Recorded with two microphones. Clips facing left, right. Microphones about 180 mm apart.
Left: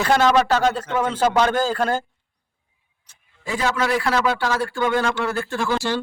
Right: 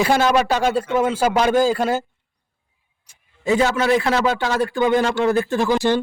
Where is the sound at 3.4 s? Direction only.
25° right (ahead or behind).